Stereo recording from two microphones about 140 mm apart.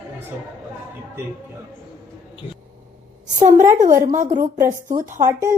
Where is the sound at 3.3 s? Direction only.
20° right (ahead or behind).